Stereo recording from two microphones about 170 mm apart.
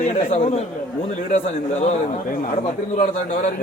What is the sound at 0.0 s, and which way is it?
A man's voice, 45° left (ahead or behind).